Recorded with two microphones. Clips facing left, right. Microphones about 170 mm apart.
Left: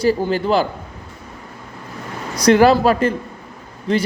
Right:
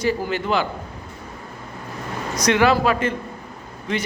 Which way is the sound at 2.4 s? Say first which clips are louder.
Left 6 dB; 40° left (ahead or behind).